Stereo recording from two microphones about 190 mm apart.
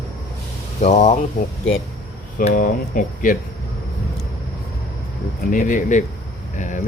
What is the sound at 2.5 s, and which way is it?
Speech, 45° left (ahead or behind).